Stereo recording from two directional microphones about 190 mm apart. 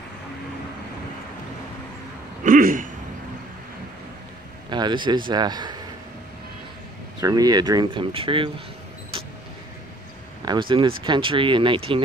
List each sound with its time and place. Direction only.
2.4 s a man's voice: 45° right (ahead or behind)
4.6 s speech: 25° right (ahead or behind)
7.2 s speech: 20° right (ahead or behind)
10.4 s speech: 25° right (ahead or behind)